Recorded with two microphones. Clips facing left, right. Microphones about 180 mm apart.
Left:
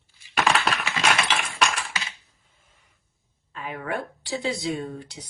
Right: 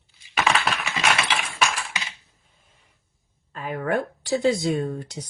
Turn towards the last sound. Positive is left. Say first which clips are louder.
# right 5 dB
turn(degrees=-45)  # may be behind; listen again after turning